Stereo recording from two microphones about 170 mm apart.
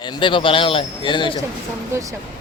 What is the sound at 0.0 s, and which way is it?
A man's voice, 25° left (ahead or behind).